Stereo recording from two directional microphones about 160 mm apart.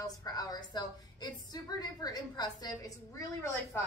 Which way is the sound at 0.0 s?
25° left (ahead or behind).